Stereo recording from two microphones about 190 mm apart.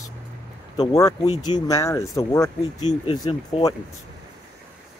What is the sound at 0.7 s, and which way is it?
Speech, 20° left (ahead or behind).